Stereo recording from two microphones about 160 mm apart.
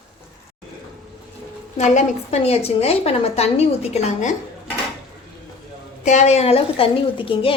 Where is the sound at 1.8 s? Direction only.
45° left (ahead or behind).